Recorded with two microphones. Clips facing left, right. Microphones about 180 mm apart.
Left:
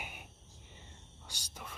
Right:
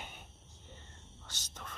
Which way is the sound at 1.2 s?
10° left (ahead or behind).